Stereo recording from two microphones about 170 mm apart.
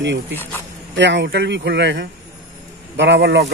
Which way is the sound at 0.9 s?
90° right.